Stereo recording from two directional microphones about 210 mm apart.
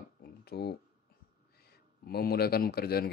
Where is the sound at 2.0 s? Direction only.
50° left (ahead or behind).